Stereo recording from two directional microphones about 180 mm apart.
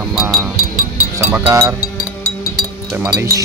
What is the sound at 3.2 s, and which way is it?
Speech, 15° right (ahead or behind).